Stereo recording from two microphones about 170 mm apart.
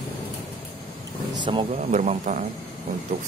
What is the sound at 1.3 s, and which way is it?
Speech, 30° right (ahead or behind).